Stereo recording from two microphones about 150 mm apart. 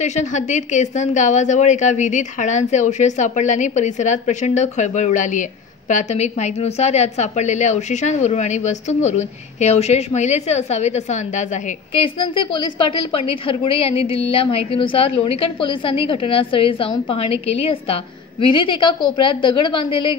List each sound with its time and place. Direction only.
0.0 s a woman's voice: 50° left (ahead or behind)
12.0 s a woman's voice: 35° left (ahead or behind)